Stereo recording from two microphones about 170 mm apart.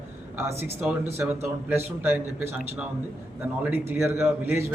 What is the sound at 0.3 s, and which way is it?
A man's voice, 15° right (ahead or behind).